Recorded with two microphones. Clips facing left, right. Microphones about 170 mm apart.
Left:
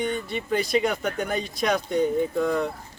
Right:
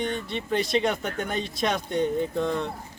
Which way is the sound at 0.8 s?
Centre (ahead or behind).